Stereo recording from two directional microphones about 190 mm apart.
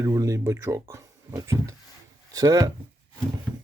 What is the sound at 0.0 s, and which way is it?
Speech, 15° right (ahead or behind).